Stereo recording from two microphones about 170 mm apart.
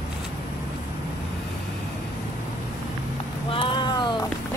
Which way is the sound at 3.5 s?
30° left (ahead or behind).